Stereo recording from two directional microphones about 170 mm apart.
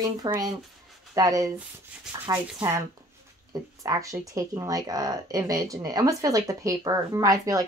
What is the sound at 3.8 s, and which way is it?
Speech, 20° right (ahead or behind).